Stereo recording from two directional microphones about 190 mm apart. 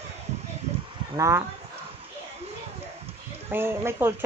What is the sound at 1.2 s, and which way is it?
Speech, 15° right (ahead or behind).